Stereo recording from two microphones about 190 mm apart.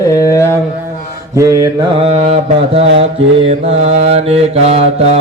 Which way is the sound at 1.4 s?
15° right (ahead or behind).